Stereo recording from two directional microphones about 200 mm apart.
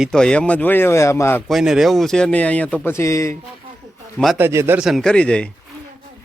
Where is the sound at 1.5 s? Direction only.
Centre (ahead or behind); by 3.4 s 15° left (ahead or behind).